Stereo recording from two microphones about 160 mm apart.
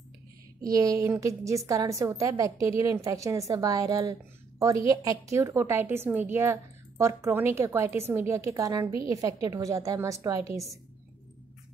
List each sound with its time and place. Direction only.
0.7 s a woman's voice: 20° right (ahead or behind)